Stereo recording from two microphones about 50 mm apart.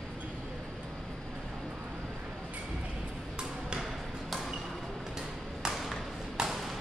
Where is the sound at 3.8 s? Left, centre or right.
Centre.